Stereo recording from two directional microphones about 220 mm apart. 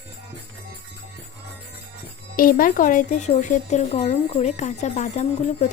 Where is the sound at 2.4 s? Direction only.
40° left (ahead or behind).